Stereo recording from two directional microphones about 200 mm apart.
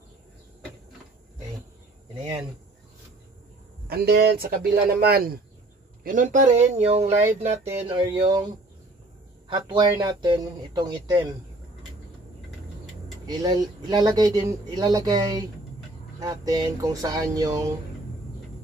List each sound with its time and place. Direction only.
3.8 s speech: 50° right (ahead or behind); by 8.5 s 20° right (ahead or behind)
9.5 s speech: 25° right (ahead or behind)
13.3 s speech: 20° right (ahead or behind)
16.2 s a sound: 20° right (ahead or behind)